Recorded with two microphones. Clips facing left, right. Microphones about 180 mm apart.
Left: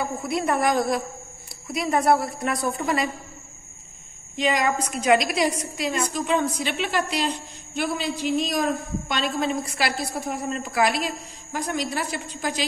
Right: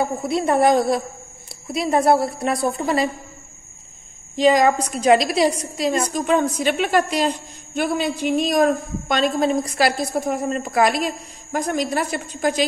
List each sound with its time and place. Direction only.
0.0 s a woman's voice: 30° right (ahead or behind)
4.4 s a woman's voice: 35° right (ahead or behind)